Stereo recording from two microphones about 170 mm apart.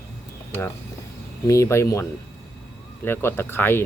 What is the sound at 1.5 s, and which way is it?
Speech, 15° left (ahead or behind).